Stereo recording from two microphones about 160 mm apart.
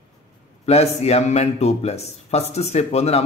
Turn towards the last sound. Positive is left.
turn(degrees=40)  # may be behind; listen again after turning